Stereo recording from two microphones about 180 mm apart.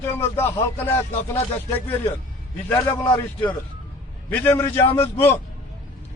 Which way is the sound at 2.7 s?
10° left (ahead or behind).